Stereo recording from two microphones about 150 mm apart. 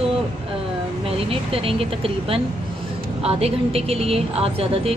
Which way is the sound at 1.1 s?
40° right (ahead or behind).